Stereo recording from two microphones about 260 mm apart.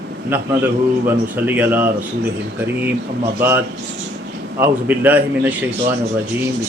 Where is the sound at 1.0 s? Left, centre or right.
Centre.